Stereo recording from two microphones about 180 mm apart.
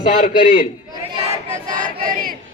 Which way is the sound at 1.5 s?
50° right (ahead or behind).